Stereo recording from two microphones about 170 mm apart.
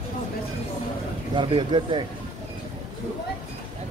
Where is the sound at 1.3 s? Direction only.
30° right (ahead or behind).